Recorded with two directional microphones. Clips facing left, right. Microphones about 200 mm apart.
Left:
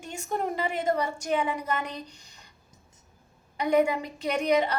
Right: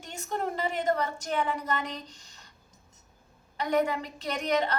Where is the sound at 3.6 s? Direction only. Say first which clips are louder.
Left 4 dB; 15° left (ahead or behind).